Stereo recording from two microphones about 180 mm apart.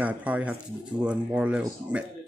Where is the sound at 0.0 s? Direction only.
10° right (ahead or behind).